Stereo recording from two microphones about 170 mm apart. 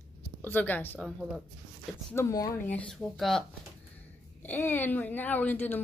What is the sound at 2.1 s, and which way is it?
Speech, 20° left (ahead or behind).